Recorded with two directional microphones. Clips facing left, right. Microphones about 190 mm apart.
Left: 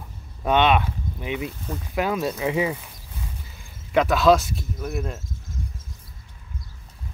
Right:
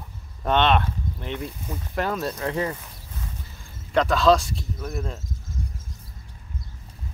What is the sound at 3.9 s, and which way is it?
Speech, 5° left (ahead or behind).